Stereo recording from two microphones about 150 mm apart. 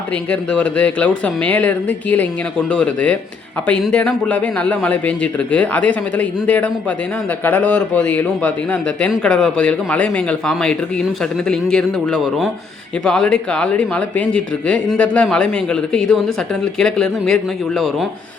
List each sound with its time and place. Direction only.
0.3 s a man's voice: 10° left (ahead or behind)